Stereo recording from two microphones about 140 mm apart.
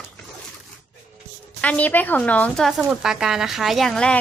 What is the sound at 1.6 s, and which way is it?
A woman's voice, 10° left (ahead or behind).